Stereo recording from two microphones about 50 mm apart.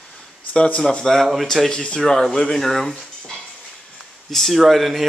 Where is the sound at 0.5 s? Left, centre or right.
Left.